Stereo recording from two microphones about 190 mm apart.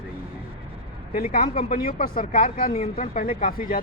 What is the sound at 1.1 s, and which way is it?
Speech, 50° left (ahead or behind).